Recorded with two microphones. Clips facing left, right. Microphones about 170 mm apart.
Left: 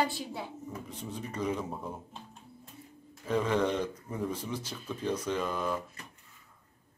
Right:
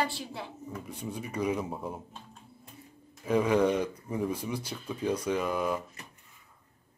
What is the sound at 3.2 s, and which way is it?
Speech, 10° right (ahead or behind).